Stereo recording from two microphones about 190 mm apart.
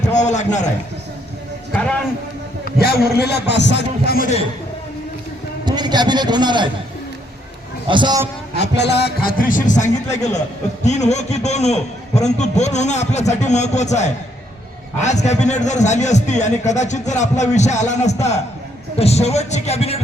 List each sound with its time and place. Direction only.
0.0 s a man's voice: 40° left (ahead or behind)
1.7 s a man's voice: 5° left (ahead or behind)
2.6 s a man's voice: 55° left (ahead or behind)
5.6 s a man's voice: 20° right (ahead or behind)
7.9 s a man's voice: 25° right (ahead or behind)
8.5 s a man's voice: 65° left (ahead or behind); by 20.0 s 35° left (ahead or behind)